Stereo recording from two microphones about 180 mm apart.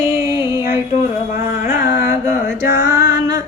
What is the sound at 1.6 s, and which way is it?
Music, 15° right (ahead or behind).